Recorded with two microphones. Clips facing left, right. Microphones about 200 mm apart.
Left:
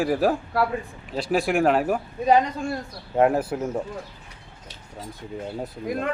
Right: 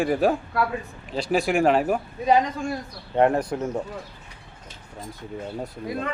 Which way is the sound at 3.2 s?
5° left (ahead or behind).